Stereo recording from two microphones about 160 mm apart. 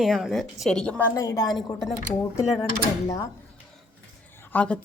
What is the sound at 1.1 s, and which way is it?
Speech, 20° left (ahead or behind).